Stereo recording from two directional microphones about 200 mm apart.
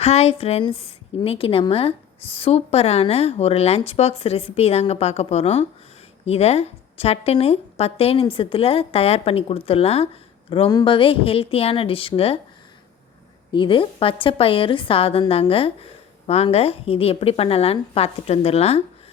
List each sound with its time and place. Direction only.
0.0 s a woman's voice: 30° left (ahead or behind)
13.5 s a woman's voice: 25° left (ahead or behind)